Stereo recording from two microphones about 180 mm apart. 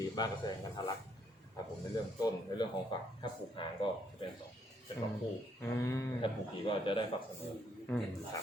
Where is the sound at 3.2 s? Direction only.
25° left (ahead or behind).